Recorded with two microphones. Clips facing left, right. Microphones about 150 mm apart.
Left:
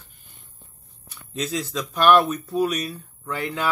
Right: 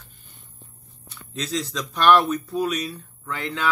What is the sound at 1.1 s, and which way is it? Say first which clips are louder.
Speech: left 1 dB; 10° left (ahead or behind).